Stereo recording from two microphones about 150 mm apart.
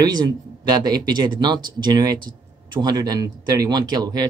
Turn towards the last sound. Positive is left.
turn(degrees=-25)  # may be behind; listen again after turning